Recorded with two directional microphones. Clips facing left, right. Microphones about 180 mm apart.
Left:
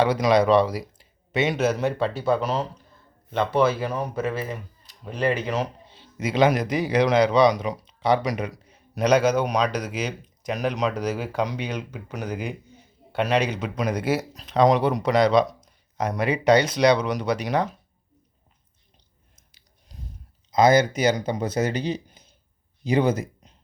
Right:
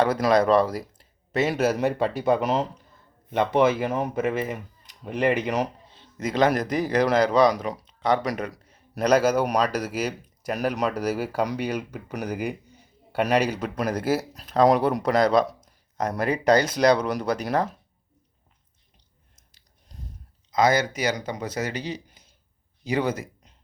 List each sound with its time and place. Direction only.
0.0 s speech: centre (ahead or behind); by 5.6 s 15° right (ahead or behind)
5.9 s speech: 5° left (ahead or behind)
20.5 s speech: 20° left (ahead or behind)